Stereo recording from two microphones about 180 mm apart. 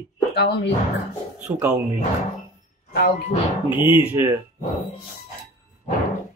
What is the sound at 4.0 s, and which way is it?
Speech, 10° right (ahead or behind).